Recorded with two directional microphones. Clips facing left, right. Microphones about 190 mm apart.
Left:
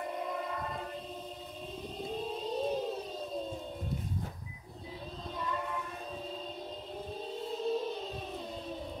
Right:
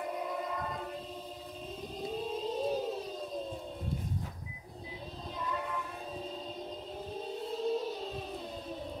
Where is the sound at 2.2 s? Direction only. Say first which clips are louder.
Even; centre (ahead or behind).